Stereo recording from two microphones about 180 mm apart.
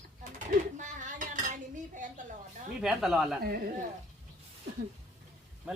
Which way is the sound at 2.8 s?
5° right (ahead or behind).